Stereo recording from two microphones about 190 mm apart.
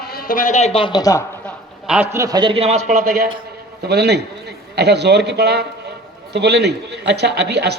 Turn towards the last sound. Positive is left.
turn(degrees=-60)  # may be behind; listen again after turning